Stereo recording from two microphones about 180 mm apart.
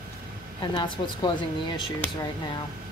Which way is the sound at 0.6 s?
25° left (ahead or behind).